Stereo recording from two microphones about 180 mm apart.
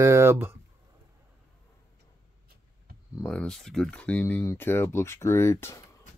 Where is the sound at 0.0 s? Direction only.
15° right (ahead or behind).